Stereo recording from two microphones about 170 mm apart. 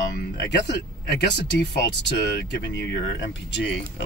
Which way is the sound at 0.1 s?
85° left.